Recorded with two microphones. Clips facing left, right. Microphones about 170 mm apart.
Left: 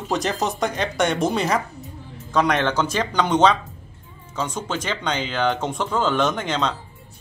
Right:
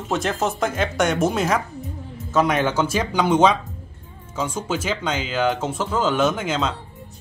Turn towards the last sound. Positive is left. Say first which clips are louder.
# right 1 dB
turn(degrees=-5)  # may be behind; listen again after turning